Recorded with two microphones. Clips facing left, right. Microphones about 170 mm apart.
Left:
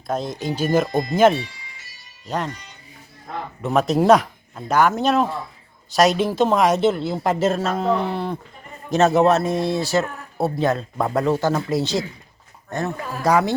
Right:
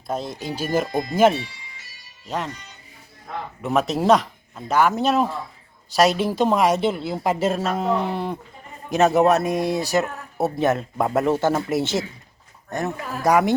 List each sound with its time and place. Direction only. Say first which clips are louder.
0.1 s a woman's voice: left 3 dB; 5° right (ahead or behind)
3.6 s a woman's voice: left 3 dB; 5° right (ahead or behind); by 13.4 s 20° right (ahead or behind)